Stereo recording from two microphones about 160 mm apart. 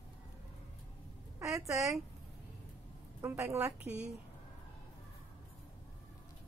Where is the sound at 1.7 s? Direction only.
20° right (ahead or behind).